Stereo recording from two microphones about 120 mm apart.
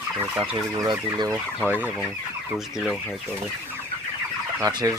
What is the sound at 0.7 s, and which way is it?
Speech, 30° right (ahead or behind).